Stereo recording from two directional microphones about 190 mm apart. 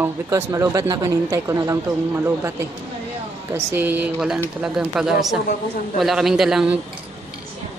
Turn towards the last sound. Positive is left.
turn(degrees=-5)  # may be behind; listen again after turning